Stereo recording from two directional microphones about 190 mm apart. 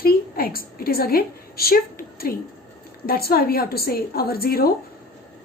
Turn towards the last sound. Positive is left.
turn(degrees=50)  # may be behind; listen again after turning